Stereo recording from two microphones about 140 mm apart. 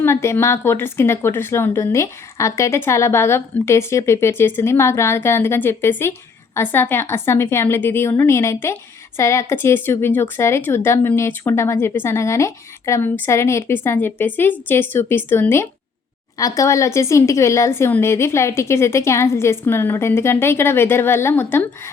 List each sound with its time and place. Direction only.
0.0 s a woman's voice: 20° left (ahead or behind)